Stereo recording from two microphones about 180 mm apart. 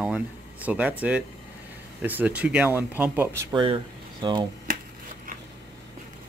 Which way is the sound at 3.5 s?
25° right (ahead or behind).